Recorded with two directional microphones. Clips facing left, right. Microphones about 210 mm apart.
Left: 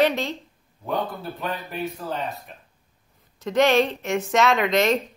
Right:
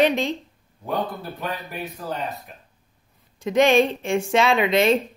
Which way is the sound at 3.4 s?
15° right (ahead or behind).